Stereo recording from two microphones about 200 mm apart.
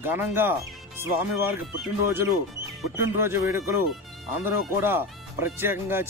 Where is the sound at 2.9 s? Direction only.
10° right (ahead or behind).